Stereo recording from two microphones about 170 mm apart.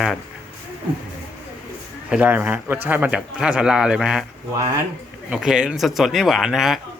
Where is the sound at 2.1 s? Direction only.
5° right (ahead or behind).